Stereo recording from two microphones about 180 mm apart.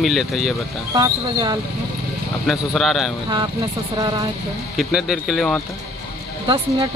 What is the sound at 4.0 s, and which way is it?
Speech, 25° right (ahead or behind).